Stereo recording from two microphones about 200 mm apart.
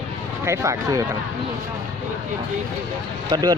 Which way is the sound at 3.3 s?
20° right (ahead or behind).